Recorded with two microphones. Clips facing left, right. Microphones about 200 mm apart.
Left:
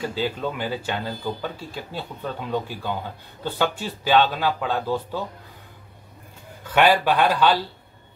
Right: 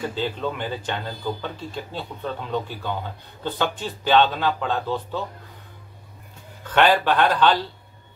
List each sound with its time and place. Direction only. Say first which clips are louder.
0.0 s speech: even; 10° left (ahead or behind)
6.7 s speech: even; 10° left (ahead or behind)